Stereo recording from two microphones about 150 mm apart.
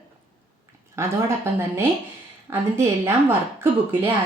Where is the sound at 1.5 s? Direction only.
15° right (ahead or behind).